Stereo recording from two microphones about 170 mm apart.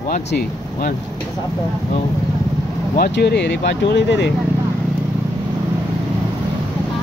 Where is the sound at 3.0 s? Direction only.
75° left (ahead or behind); by 4.3 s 90° left.